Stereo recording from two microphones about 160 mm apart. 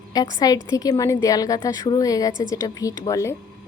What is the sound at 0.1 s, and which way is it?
A woman's voice, 25° left (ahead or behind).